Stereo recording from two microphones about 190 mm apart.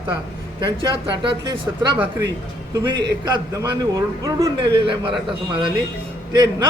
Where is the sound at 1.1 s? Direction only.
25° right (ahead or behind).